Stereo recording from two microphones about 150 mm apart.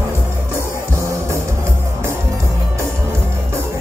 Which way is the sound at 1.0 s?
20° right (ahead or behind).